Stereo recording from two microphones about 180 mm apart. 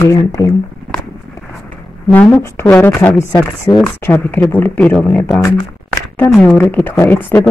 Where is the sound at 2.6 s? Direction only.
10° left (ahead or behind).